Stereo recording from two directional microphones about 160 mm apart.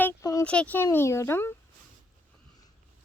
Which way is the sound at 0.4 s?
5° left (ahead or behind).